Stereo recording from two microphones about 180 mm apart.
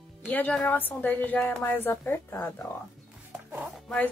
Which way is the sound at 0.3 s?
5° left (ahead or behind).